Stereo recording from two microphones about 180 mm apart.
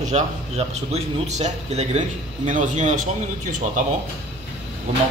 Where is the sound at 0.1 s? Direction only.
35° right (ahead or behind).